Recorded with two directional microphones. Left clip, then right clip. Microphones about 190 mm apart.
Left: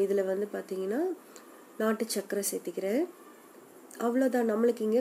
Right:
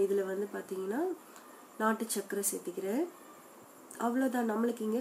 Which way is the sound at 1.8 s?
15° left (ahead or behind).